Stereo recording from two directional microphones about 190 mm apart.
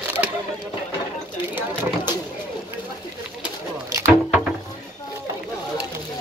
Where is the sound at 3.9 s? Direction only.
15° right (ahead or behind).